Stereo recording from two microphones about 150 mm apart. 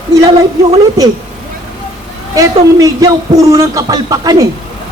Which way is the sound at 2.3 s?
20° right (ahead or behind).